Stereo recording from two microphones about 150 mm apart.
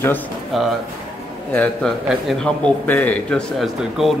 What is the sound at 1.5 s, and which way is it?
A man's voice, 10° left (ahead or behind).